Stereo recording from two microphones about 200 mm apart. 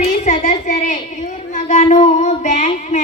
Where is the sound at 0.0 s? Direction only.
35° left (ahead or behind).